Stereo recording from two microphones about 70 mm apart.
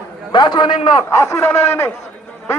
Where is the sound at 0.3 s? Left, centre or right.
Left.